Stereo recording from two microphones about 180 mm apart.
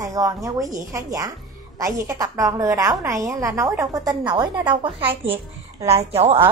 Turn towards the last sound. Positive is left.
turn(degrees=-35)  # may be behind; listen again after turning